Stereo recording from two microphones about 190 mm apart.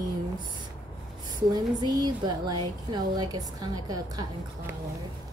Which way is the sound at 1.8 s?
20° right (ahead or behind).